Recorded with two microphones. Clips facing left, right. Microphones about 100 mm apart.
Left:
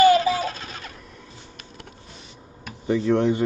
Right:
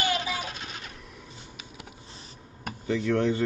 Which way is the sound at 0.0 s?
40° left (ahead or behind).